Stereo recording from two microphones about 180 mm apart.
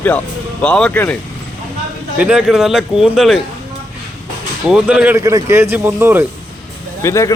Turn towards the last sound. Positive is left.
turn(degrees=15)  # may be behind; listen again after turning